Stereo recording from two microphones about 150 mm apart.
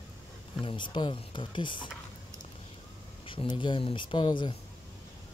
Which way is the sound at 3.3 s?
35° left (ahead or behind).